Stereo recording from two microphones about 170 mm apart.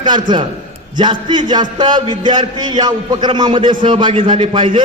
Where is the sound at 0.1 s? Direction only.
25° right (ahead or behind).